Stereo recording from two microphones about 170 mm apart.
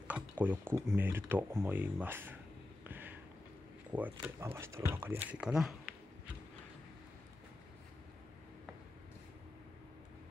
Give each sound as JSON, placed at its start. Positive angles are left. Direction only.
{"t": 0.1, "sound": "speech", "side_deg": -10}
{"t": 2.8, "sound": "a sound", "side_deg": -10}
{"t": 3.9, "sound": "speech", "side_deg": -10}